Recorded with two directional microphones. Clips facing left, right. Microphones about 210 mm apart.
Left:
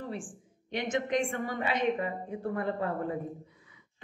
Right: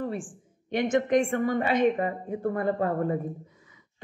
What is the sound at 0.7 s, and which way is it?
A woman's voice, 50° right (ahead or behind).